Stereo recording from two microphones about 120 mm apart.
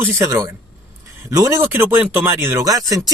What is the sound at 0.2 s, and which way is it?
Speech, 25° right (ahead or behind).